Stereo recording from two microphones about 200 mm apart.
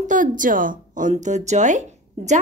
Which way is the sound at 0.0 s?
40° right (ahead or behind).